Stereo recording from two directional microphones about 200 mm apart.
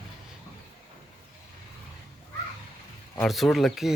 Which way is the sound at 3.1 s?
Centre (ahead or behind).